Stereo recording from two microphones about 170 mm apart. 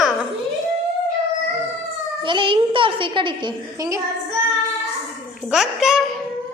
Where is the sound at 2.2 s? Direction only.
30° right (ahead or behind).